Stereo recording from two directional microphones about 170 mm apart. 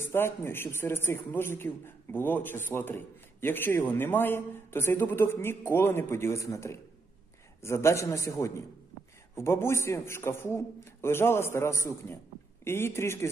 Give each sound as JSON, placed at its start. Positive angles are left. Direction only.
{"t": 0.0, "sound": "a man's voice", "side_deg": 15}